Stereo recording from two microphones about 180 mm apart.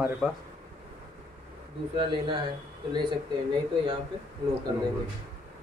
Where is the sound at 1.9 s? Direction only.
30° right (ahead or behind).